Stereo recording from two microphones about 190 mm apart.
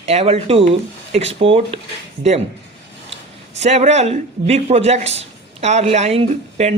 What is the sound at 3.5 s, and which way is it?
Speech, 35° right (ahead or behind).